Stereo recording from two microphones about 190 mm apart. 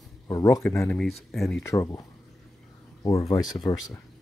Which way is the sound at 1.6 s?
15° left (ahead or behind).